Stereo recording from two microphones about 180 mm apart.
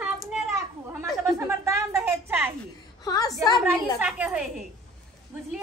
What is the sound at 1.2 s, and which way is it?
A woman's voice, 15° right (ahead or behind).